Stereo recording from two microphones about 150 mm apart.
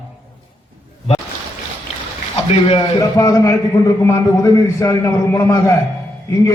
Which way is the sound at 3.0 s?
20° left (ahead or behind).